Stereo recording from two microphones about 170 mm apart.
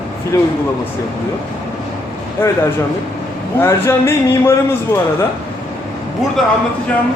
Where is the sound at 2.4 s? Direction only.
15° left (ahead or behind).